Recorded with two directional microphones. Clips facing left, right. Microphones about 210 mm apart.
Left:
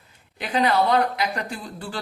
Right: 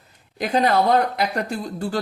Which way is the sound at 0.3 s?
45° right (ahead or behind).